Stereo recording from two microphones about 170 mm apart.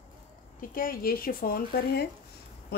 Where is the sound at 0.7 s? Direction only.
60° left (ahead or behind).